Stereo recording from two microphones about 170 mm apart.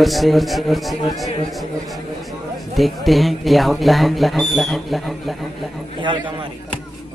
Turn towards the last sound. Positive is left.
turn(degrees=-30)  # may be behind; listen again after turning